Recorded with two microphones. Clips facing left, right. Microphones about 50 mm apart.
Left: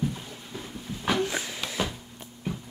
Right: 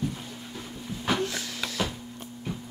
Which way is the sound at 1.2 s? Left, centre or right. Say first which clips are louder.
Left 2 dB; left.